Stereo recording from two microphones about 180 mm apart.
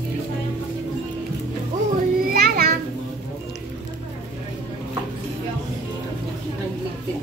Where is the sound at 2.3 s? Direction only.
55° right (ahead or behind).